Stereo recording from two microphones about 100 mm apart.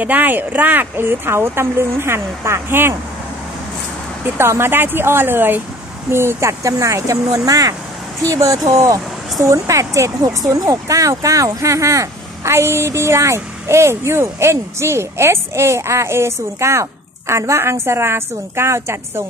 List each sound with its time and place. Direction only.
0.0 s speech: 15° right (ahead or behind)
4.4 s speech: 25° right (ahead or behind)